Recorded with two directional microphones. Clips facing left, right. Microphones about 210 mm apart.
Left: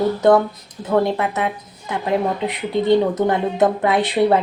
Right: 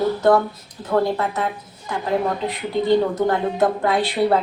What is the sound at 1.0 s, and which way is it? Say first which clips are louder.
Speech: left 1 dB; 20° left (ahead or behind).